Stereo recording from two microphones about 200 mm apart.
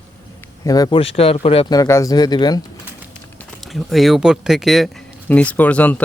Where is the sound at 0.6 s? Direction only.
20° left (ahead or behind).